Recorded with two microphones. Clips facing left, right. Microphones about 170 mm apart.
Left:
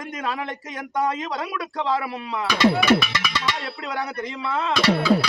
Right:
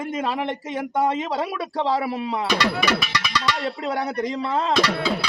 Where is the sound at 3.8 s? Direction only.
35° right (ahead or behind).